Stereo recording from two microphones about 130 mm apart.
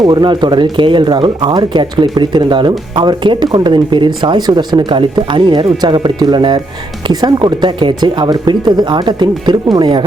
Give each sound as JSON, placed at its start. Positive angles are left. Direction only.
{"t": 0.0, "sound": "speech", "side_deg": -35}